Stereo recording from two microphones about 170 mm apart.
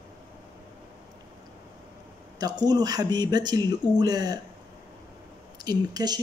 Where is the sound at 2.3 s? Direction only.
25° right (ahead or behind).